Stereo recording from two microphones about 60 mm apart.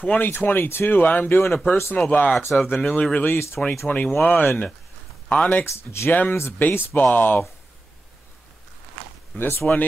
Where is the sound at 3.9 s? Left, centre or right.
Left.